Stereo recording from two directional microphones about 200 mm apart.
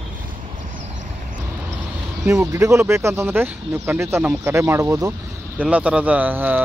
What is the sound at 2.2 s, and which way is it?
Speech, 15° right (ahead or behind).